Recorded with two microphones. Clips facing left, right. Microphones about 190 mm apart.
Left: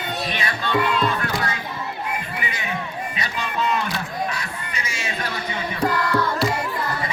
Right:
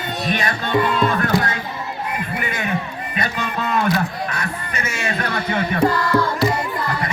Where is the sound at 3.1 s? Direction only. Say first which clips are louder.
Right 4 dB; 55° right (ahead or behind).